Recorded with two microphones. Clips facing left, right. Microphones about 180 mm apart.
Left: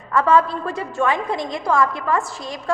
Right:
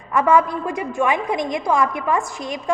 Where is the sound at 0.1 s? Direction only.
15° right (ahead or behind).